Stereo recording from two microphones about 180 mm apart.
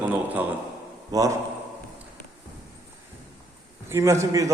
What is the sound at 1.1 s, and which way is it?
Speech, 20° right (ahead or behind).